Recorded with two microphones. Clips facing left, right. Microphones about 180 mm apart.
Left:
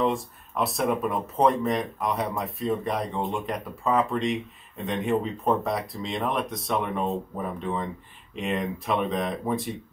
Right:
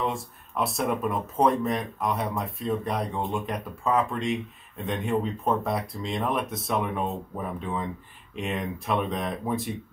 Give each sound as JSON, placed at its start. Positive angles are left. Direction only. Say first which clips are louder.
{"t": 0.0, "sound": "speech", "louder": "left 4 dB", "side_deg": 0}